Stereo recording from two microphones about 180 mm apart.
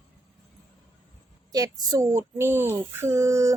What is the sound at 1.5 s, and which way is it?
Speech, 20° right (ahead or behind).